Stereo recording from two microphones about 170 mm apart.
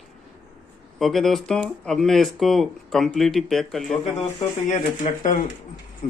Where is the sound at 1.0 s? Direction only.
Centre (ahead or behind).